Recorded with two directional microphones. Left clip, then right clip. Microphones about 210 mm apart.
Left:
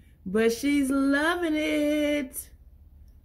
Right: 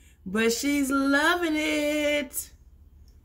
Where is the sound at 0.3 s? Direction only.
15° left (ahead or behind).